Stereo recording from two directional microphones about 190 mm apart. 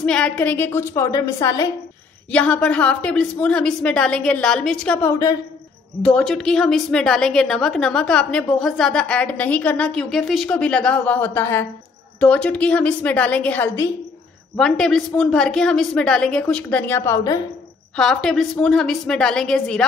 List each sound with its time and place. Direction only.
0.0 s a woman's voice: 5° left (ahead or behind)
2.3 s a woman's voice: 5° left (ahead or behind)
6.0 s a woman's voice: 5° left (ahead or behind)
17.9 s a woman's voice: 5° left (ahead or behind)